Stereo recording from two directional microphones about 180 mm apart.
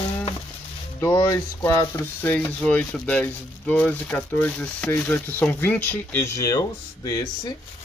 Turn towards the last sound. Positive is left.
turn(degrees=20)  # may be behind; listen again after turning